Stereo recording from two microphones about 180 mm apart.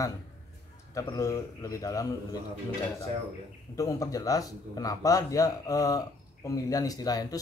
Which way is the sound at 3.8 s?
20° left (ahead or behind).